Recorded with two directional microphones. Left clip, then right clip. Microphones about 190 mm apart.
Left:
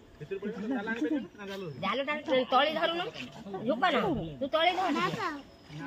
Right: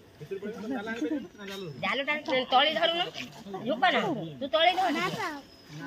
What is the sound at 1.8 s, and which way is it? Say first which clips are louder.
Speech: right 2 dB; 45° left (ahead or behind).